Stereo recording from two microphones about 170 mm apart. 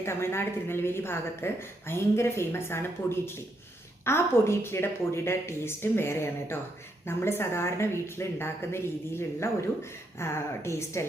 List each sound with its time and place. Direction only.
0.0 s a woman's voice: 15° left (ahead or behind)